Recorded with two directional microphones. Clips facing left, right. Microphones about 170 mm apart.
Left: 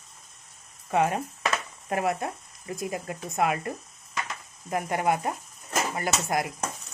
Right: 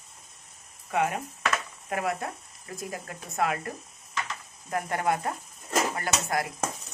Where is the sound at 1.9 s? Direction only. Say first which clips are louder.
Left 3 dB; 25° left (ahead or behind).